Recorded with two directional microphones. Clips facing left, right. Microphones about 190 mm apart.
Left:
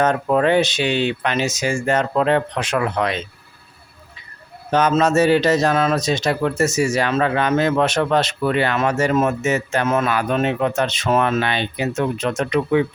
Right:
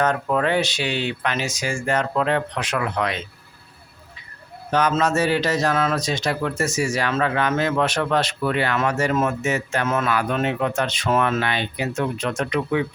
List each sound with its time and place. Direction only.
0.0 s a man's voice: 25° left (ahead or behind)
4.7 s a man's voice: 25° left (ahead or behind)